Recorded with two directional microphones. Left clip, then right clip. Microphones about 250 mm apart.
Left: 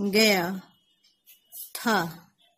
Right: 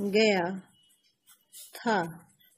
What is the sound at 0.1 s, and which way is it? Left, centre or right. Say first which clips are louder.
Speech: left 3 dB; left.